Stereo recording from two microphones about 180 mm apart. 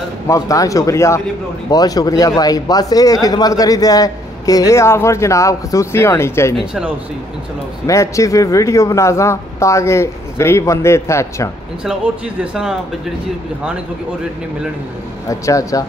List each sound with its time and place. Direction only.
0.3 s speech: 20° left (ahead or behind)
7.8 s speech: 15° left (ahead or behind)
11.8 s speech: 5° right (ahead or behind)
15.2 s speech: 15° left (ahead or behind)